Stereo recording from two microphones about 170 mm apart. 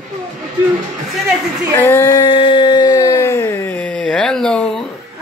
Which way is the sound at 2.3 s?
30° left (ahead or behind).